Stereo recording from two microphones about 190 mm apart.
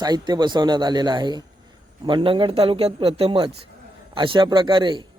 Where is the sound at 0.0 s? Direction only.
20° right (ahead or behind).